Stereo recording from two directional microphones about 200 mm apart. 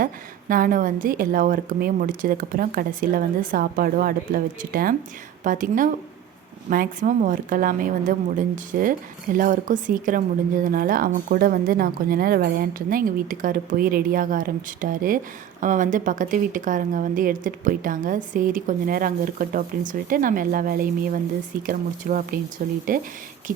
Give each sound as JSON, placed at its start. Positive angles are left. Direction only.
{"t": 0.0, "sound": "a woman's voice", "side_deg": -45}